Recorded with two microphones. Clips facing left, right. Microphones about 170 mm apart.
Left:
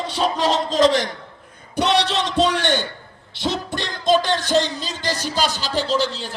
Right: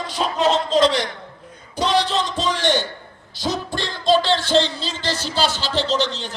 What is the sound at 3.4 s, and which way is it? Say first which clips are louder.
Music: even; 25° left (ahead or behind).